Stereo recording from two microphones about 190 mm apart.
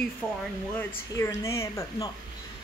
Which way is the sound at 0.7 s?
15° left (ahead or behind).